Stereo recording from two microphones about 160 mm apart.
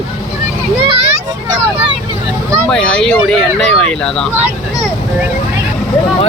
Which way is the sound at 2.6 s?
5° left (ahead or behind).